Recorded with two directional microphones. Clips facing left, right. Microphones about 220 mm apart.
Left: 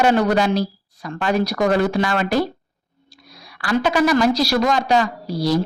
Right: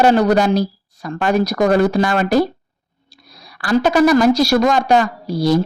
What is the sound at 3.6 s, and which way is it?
A woman's voice, 40° right (ahead or behind).